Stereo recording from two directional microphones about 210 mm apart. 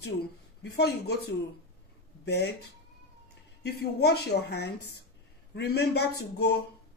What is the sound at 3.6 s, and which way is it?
Speech, 50° left (ahead or behind).